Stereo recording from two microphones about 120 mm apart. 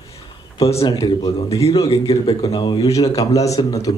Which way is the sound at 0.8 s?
40° left (ahead or behind).